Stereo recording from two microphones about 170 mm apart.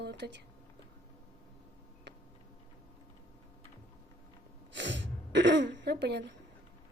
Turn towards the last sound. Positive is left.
turn(degrees=-75)  # may be behind; listen again after turning